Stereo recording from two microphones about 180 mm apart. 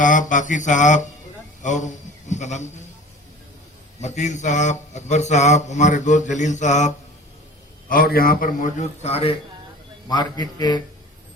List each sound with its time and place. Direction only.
0.0 s a sound: 45° left (ahead or behind)
1.6 s a man's voice: 40° left (ahead or behind)
4.0 s mantra: 40° left (ahead or behind)
7.9 s a sound: 55° left (ahead or behind)
9.0 s mantra: 35° left (ahead or behind)
10.1 s a man's voice: 25° left (ahead or behind)